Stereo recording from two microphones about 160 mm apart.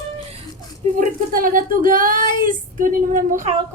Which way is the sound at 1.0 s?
60° right (ahead or behind).